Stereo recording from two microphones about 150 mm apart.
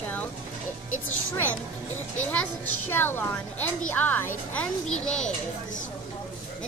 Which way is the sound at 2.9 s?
15° left (ahead or behind).